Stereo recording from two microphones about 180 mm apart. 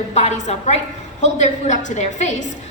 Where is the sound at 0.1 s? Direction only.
40° left (ahead or behind).